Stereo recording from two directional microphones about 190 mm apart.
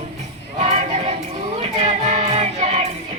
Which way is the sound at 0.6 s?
35° right (ahead or behind).